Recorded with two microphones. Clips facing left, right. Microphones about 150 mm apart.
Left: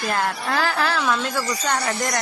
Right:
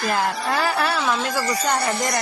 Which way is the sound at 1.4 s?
60° right (ahead or behind).